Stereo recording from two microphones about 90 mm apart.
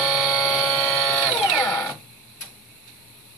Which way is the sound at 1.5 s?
20° left (ahead or behind).